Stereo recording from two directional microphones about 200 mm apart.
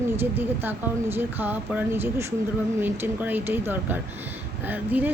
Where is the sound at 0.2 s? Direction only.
10° right (ahead or behind).